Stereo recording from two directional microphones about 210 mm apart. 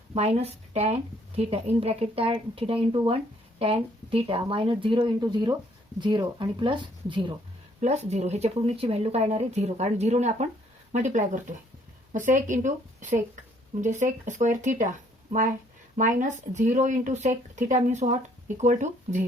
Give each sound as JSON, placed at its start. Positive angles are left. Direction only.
{"t": 0.1, "sound": "speech", "side_deg": -30}
{"t": 16.0, "sound": "speech", "side_deg": -35}